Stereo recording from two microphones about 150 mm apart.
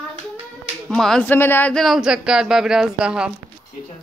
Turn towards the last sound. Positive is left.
turn(degrees=-5)  # may be behind; listen again after turning